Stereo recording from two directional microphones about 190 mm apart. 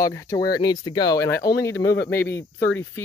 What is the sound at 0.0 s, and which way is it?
Speech, 15° left (ahead or behind).